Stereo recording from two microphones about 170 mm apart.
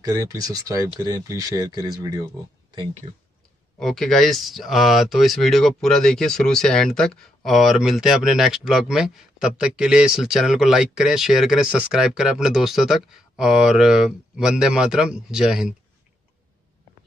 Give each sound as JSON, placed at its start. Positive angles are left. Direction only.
{"t": 0.1, "sound": "speech", "side_deg": -20}
{"t": 3.8, "sound": "speech", "side_deg": 0}